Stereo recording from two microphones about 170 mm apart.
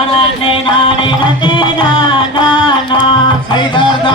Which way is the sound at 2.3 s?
25° left (ahead or behind).